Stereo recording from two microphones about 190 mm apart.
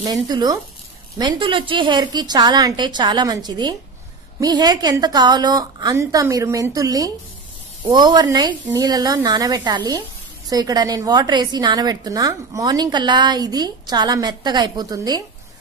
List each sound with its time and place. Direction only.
0.0 s a woman's voice: 20° right (ahead or behind)